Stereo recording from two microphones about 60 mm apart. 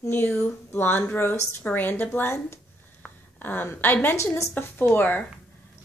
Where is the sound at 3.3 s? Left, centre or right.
Left.